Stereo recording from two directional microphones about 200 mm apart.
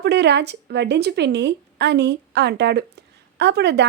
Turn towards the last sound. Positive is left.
turn(degrees=-55)  # may be behind; listen again after turning